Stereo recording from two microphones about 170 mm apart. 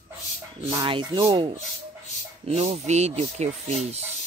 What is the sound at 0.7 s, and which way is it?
Speech, 30° right (ahead or behind).